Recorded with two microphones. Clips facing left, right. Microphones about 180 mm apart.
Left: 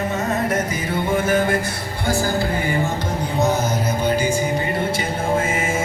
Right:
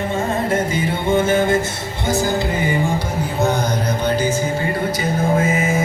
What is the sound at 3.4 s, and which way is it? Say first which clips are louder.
Music: right 1 dB; 5° left (ahead or behind).